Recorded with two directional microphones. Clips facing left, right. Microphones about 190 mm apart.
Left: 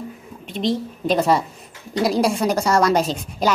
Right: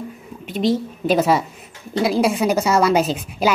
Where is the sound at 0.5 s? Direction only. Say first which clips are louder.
Right 3 dB; 5° right (ahead or behind).